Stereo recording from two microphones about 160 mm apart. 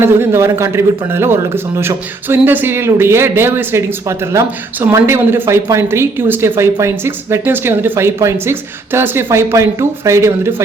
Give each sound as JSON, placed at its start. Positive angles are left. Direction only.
{"t": 0.0, "sound": "a man's voice", "side_deg": -15}